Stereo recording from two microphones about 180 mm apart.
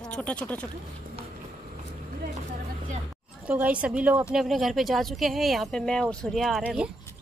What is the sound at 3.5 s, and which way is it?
A woman's voice, 10° right (ahead or behind).